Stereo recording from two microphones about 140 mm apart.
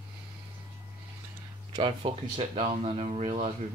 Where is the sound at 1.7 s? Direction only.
40° right (ahead or behind).